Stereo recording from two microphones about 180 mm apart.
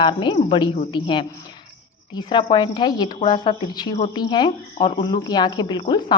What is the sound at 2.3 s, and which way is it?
A woman's voice, 25° left (ahead or behind).